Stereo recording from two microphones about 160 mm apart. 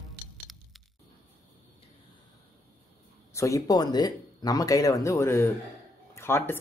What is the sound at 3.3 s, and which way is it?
Speech, 20° left (ahead or behind).